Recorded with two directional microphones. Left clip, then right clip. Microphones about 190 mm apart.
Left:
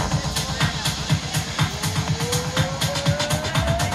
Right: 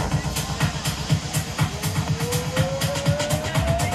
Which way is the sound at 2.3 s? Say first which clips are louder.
Even; 15° right (ahead or behind).